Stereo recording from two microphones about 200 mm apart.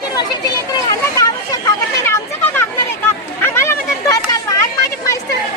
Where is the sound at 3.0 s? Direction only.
10° left (ahead or behind).